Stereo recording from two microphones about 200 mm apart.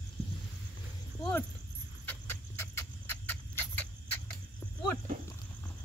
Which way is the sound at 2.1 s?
10° left (ahead or behind).